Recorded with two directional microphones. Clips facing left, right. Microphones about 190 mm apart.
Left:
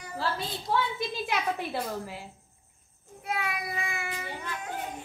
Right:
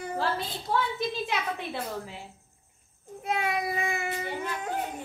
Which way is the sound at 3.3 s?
30° right (ahead or behind).